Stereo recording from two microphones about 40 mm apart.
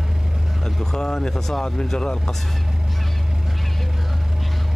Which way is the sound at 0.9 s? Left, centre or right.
Centre.